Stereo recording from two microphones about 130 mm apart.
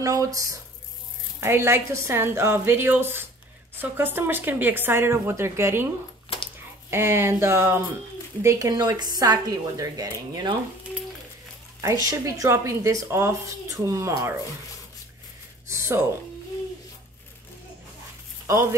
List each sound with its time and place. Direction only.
0.0 s speech: 25° right (ahead or behind)
6.9 s speech: 20° right (ahead or behind)
11.8 s speech: 25° right (ahead or behind)
15.7 s music: 20° right (ahead or behind)
18.5 s speech: 20° right (ahead or behind)